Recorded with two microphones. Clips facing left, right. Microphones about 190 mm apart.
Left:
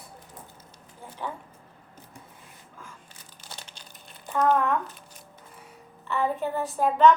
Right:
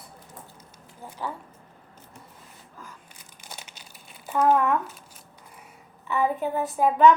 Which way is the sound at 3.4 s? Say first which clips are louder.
Right 1 dB; 10° right (ahead or behind).